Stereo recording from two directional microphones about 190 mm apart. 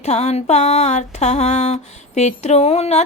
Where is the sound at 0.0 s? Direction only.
35° left (ahead or behind).